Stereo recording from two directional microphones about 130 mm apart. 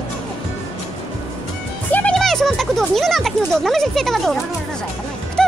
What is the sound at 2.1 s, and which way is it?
A child's voice, 5° left (ahead or behind).